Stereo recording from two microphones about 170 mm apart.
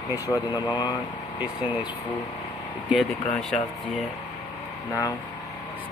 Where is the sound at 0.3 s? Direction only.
25° left (ahead or behind).